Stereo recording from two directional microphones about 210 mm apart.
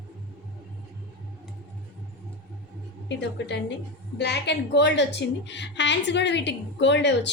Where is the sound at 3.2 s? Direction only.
55° left (ahead or behind).